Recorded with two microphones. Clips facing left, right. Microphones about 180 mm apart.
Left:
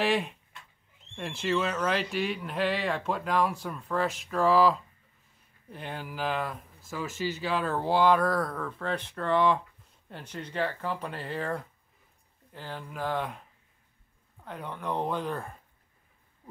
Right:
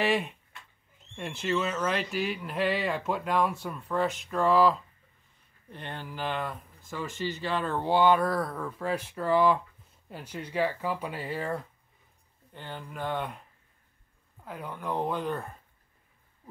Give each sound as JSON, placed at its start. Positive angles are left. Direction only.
{"t": 0.0, "sound": "speech", "side_deg": 0}
{"t": 14.4, "sound": "speech", "side_deg": 0}